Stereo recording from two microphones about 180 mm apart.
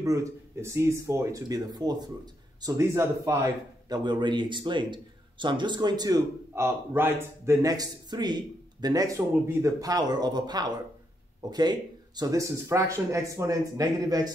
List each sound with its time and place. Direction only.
0.0 s speech: 20° right (ahead or behind)